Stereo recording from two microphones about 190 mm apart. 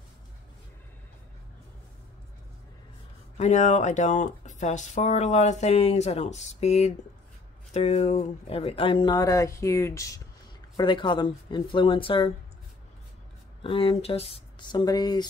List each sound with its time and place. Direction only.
3.3 s speech: 40° left (ahead or behind)
13.6 s speech: 30° left (ahead or behind)